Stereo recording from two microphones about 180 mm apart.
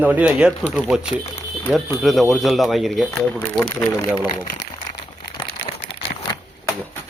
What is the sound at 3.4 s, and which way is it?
Speech, 15° left (ahead or behind).